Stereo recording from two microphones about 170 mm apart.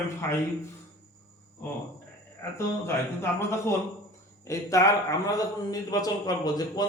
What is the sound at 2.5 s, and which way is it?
A man's voice, 15° left (ahead or behind).